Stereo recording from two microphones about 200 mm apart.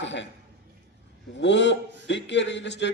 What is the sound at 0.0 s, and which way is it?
Speech, 65° left (ahead or behind).